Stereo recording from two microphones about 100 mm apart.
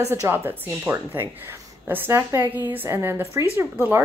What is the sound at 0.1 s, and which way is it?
Speech, 25° right (ahead or behind).